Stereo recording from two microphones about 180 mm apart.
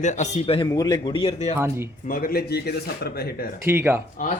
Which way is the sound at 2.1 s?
55° left (ahead or behind).